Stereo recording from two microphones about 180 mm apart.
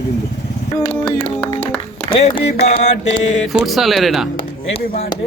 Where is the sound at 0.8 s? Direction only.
10° left (ahead or behind).